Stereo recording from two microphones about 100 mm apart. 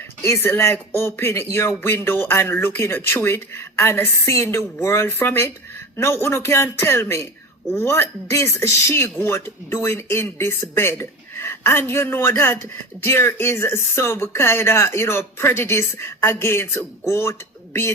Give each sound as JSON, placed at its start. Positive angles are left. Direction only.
{"t": 0.2, "sound": "speech", "side_deg": 25}